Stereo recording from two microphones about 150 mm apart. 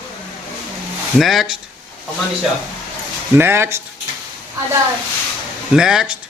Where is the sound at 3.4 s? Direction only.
15° right (ahead or behind).